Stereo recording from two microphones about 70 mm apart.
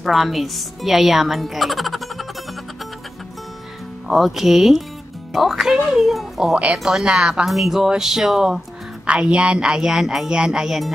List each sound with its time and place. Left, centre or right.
0.0 s speech: centre
4.1 s speech: centre
5.3 s music: centre
6.6 s a woman's voice: centre